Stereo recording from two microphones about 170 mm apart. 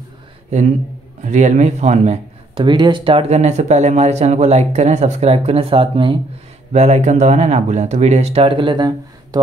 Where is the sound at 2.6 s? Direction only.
25° right (ahead or behind).